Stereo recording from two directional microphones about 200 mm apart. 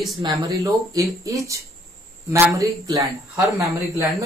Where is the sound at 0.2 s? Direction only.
20° right (ahead or behind).